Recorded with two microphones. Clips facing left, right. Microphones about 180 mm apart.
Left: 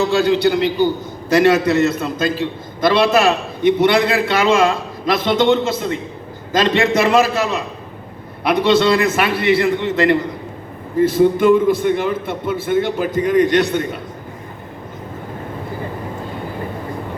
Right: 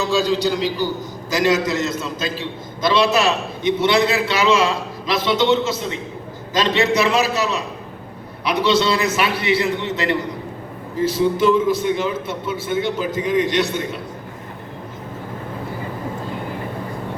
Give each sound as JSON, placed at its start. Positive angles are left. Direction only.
{"t": 0.0, "sound": "a man's voice", "side_deg": 60}